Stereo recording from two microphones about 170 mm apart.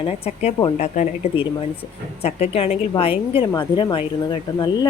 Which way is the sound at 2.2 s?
40° left (ahead or behind).